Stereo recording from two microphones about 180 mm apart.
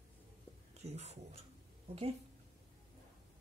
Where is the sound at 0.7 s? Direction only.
40° right (ahead or behind).